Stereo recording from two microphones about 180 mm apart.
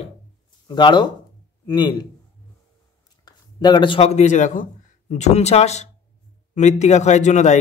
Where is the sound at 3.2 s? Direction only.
25° left (ahead or behind).